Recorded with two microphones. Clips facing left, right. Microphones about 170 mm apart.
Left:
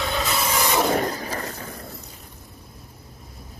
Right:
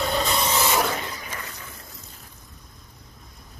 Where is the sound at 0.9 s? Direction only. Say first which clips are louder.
Left 9 dB; 40° left (ahead or behind).